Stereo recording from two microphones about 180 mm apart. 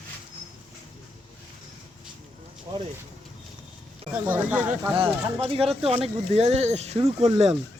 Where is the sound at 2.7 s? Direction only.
25° right (ahead or behind).